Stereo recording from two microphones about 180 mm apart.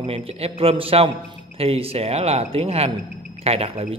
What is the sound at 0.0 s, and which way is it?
Speech, 35° right (ahead or behind).